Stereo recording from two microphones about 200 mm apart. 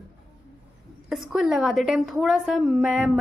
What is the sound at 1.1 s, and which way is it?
A woman's voice, centre (ahead or behind).